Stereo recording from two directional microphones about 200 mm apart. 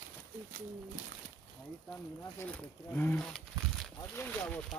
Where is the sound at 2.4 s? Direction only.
10° left (ahead or behind).